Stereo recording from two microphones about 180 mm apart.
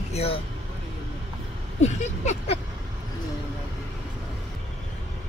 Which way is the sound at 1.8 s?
35° left (ahead or behind).